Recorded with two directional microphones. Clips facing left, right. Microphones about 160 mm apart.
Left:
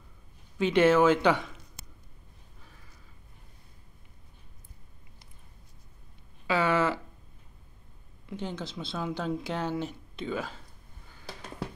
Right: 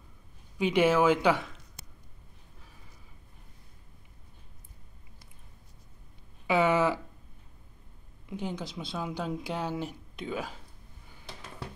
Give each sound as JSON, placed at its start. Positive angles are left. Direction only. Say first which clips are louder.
{"t": 0.6, "sound": "speech", "louder": "left 2 dB", "side_deg": -10}
{"t": 6.4, "sound": "speech", "louder": "right 1 dB", "side_deg": -15}
{"t": 8.3, "sound": "speech", "louder": "even", "side_deg": -10}